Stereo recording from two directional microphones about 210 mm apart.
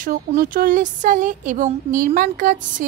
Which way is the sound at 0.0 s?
40° right (ahead or behind).